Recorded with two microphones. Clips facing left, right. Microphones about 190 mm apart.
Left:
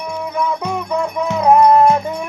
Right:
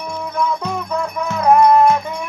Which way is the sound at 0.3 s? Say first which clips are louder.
Even; 10° left (ahead or behind).